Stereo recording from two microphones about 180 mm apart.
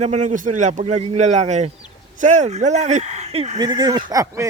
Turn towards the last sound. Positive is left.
turn(degrees=-20)  # may be behind; listen again after turning